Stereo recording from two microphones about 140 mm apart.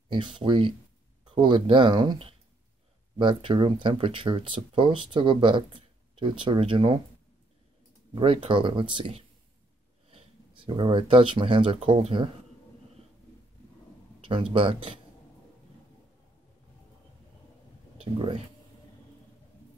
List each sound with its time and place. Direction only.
0.1 s speech: 35° right (ahead or behind)
8.1 s speech: 40° right (ahead or behind)
14.2 s speech: 40° right (ahead or behind)